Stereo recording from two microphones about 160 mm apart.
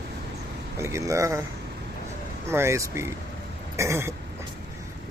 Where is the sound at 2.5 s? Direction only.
15° right (ahead or behind).